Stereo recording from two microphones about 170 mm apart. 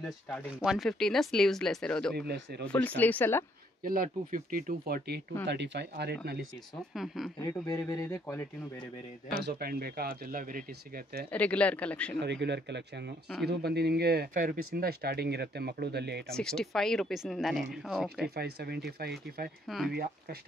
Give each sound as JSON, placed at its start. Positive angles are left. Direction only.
{"t": 0.0, "sound": "speech", "side_deg": 0}
{"t": 2.1, "sound": "speech", "side_deg": -75}
{"t": 2.6, "sound": "speech", "side_deg": 10}
{"t": 3.8, "sound": "speech", "side_deg": -55}
{"t": 5.5, "sound": "speech", "side_deg": -90}
{"t": 6.9, "sound": "speech", "side_deg": 0}
{"t": 7.3, "sound": "speech", "side_deg": 20}
{"t": 9.4, "sound": "speech", "side_deg": -65}
{"t": 11.3, "sound": "speech", "side_deg": 10}
{"t": 12.2, "sound": "speech", "side_deg": -90}
{"t": 13.5, "sound": "speech", "side_deg": -70}
{"t": 16.3, "sound": "speech", "side_deg": 5}
{"t": 18.3, "sound": "speech", "side_deg": -70}